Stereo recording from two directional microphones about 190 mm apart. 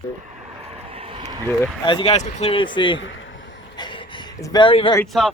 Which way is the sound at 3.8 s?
25° left (ahead or behind).